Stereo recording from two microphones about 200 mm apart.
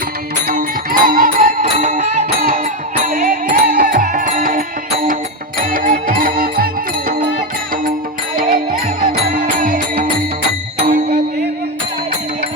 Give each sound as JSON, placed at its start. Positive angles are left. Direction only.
{"t": 0.4, "sound": "music", "side_deg": -45}
{"t": 1.6, "sound": "music", "side_deg": -35}
{"t": 5.7, "sound": "music", "side_deg": -45}
{"t": 9.0, "sound": "music", "side_deg": -45}
{"t": 10.8, "sound": "music", "side_deg": -35}